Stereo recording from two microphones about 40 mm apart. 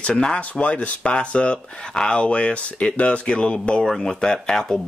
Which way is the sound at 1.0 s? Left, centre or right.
Left.